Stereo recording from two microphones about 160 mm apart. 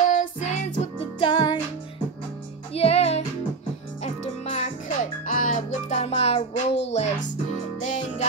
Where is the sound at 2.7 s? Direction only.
40° left (ahead or behind).